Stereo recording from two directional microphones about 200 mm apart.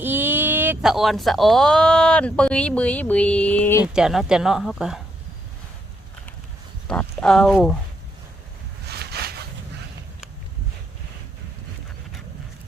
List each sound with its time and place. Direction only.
0.0 s speech: 10° right (ahead or behind); by 3.8 s 10° left (ahead or behind)
3.9 s a woman's voice: centre (ahead or behind)
6.8 s speech: 5° left (ahead or behind)
8.9 s a sound: 55° right (ahead or behind)